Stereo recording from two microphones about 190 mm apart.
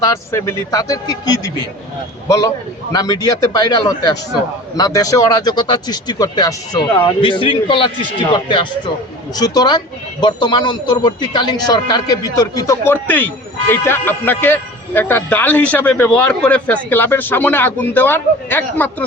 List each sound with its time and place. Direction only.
0.0 s a man's voice: 15° left (ahead or behind)